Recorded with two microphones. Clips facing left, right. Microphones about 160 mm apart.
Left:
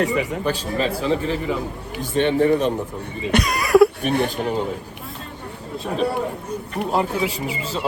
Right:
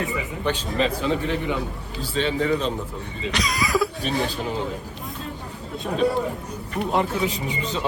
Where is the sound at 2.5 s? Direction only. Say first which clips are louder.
Left 5 dB; 50° left (ahead or behind).